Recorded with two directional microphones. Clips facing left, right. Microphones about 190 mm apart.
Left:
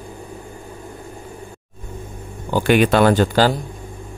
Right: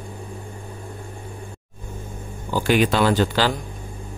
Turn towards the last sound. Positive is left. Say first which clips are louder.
# left 4 dB
turn(degrees=45)  # may be behind; listen again after turning